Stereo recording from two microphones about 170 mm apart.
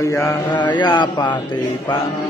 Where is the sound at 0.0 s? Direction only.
20° left (ahead or behind).